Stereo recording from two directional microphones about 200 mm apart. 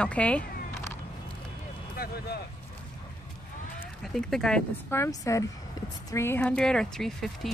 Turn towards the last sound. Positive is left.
turn(degrees=0)  # may be behind; listen again after turning